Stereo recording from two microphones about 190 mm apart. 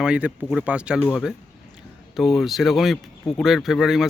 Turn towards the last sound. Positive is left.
turn(degrees=0)  # may be behind; listen again after turning